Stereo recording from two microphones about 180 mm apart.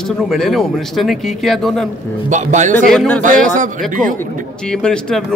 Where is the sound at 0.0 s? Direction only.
Centre (ahead or behind).